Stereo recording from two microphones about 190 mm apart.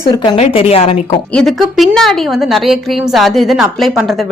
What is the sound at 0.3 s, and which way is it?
Speech, 35° left (ahead or behind).